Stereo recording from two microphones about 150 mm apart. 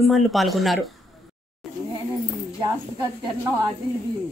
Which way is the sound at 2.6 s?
25° right (ahead or behind).